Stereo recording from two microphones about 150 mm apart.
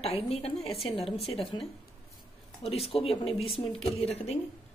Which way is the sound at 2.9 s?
40° left (ahead or behind).